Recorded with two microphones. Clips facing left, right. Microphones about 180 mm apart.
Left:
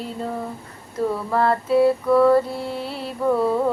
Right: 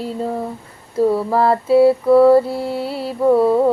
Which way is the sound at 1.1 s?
30° right (ahead or behind).